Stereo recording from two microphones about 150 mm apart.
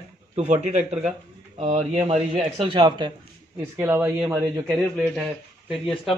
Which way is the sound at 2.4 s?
35° right (ahead or behind).